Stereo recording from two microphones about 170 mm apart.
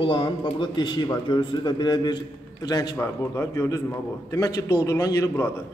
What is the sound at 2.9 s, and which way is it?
A man's voice, 15° left (ahead or behind).